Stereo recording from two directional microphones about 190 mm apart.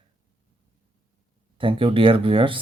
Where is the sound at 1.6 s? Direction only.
25° right (ahead or behind).